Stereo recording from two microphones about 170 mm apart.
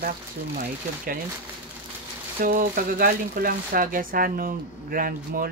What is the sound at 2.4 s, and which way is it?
Speech, 55° right (ahead or behind).